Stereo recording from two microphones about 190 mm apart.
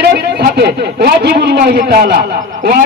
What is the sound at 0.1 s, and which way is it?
A man's voice, 55° right (ahead or behind).